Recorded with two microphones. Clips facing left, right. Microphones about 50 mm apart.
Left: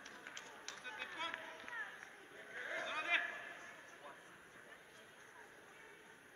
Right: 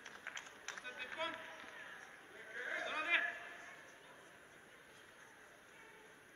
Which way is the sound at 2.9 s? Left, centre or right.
Centre.